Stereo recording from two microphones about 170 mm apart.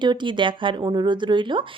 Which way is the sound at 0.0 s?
25° right (ahead or behind).